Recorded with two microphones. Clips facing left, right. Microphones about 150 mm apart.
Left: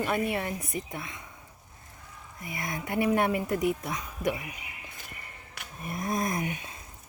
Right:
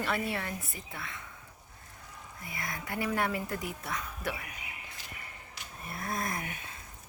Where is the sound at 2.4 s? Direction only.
20° left (ahead or behind).